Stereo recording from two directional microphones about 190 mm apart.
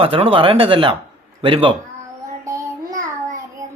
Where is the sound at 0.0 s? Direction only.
30° right (ahead or behind).